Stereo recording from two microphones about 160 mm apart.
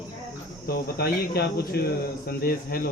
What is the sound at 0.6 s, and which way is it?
Speech, 75° left (ahead or behind).